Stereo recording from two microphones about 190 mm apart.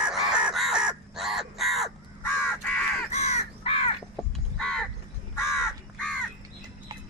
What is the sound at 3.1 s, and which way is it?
Crow, 35° left (ahead or behind).